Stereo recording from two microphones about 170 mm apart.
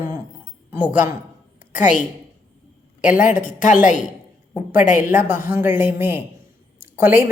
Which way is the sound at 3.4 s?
50° left (ahead or behind).